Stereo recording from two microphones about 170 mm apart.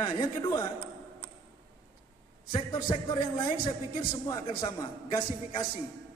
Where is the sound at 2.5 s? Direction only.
30° left (ahead or behind).